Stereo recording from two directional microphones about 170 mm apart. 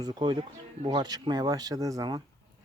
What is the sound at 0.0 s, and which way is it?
Speech, 25° right (ahead or behind).